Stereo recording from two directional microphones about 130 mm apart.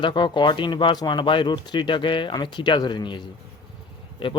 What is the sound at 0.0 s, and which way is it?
Speech, 35° left (ahead or behind).